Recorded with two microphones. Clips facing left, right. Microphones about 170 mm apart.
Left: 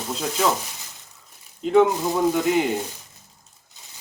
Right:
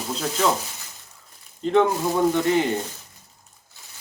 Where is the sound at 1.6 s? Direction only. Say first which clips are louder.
Left 2 dB; 5° left (ahead or behind).